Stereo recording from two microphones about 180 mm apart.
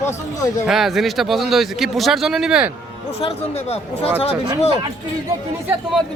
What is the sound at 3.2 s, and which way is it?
Speech, 35° left (ahead or behind).